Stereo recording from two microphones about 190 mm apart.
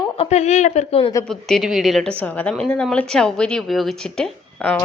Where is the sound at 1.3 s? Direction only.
Centre (ahead or behind).